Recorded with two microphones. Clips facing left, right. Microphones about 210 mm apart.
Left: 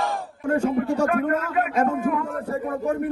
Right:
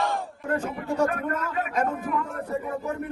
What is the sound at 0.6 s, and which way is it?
Speech, 55° left (ahead or behind).